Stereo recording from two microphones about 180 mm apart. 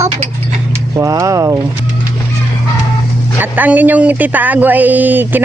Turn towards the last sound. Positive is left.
turn(degrees=-10)  # may be behind; listen again after turning